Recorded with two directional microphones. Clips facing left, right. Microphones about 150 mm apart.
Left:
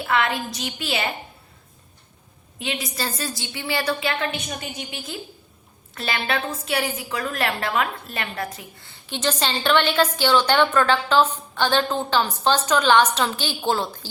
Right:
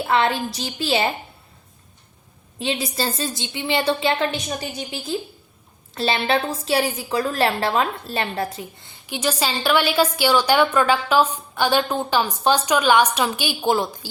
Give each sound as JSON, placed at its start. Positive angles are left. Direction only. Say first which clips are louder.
{"t": 0.0, "sound": "a woman's voice", "louder": "right 3 dB", "side_deg": -30}
{"t": 2.6, "sound": "a woman's voice", "louder": "right 4 dB", "side_deg": -30}
{"t": 5.9, "sound": "a woman's voice", "louder": "right 5 dB", "side_deg": -30}
{"t": 9.0, "sound": "a woman's voice", "louder": "right 1 dB", "side_deg": -10}